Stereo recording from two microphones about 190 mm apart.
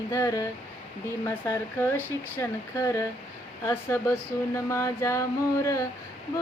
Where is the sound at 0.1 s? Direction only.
15° left (ahead or behind).